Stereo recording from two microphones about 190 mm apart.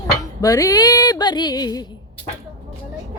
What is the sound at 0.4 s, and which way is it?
Speech, 20° left (ahead or behind).